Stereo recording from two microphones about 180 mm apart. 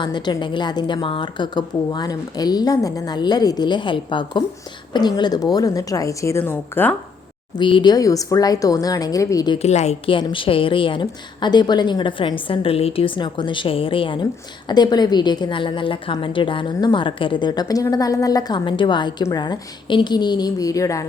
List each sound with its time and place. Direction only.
0.0 s a woman's voice: 25° left (ahead or behind)
7.6 s a woman's voice: 25° left (ahead or behind)
9.6 s a woman's voice: 40° left (ahead or behind); by 21.0 s 20° left (ahead or behind)